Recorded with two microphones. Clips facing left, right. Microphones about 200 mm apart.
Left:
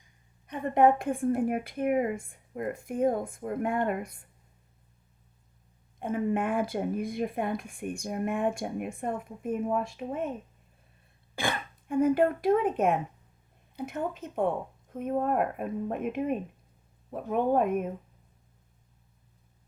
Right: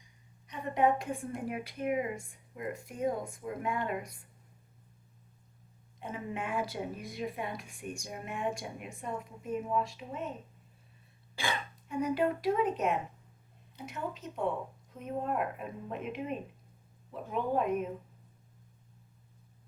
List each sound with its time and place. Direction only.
0.4 s a woman's voice: 55° left (ahead or behind)
6.0 s a woman's voice: 55° left (ahead or behind)
11.3 s a woman's voice: 55° left (ahead or behind)